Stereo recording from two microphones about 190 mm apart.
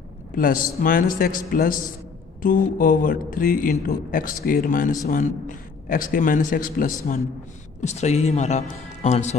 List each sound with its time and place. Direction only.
0.4 s a man's voice: 45° left (ahead or behind)